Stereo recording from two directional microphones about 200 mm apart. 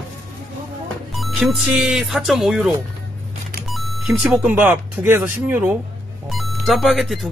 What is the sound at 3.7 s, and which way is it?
Speech, centre (ahead or behind).